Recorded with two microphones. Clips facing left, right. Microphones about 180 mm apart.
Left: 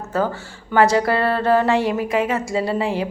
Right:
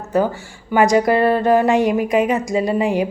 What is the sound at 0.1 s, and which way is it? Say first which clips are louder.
A woman's voice: right 4 dB; 15° right (ahead or behind).